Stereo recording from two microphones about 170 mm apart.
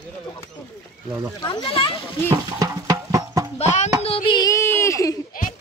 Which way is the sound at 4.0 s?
30° left (ahead or behind).